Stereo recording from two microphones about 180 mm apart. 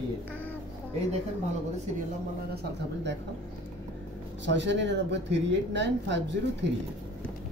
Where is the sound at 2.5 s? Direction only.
70° right (ahead or behind).